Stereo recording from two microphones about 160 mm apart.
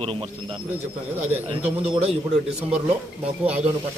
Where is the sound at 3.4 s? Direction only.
40° right (ahead or behind).